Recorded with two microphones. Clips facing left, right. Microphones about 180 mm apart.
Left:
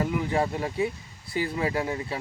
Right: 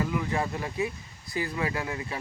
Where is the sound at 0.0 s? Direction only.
30° left (ahead or behind).